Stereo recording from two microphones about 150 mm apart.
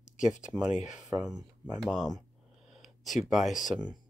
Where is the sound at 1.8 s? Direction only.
Centre (ahead or behind).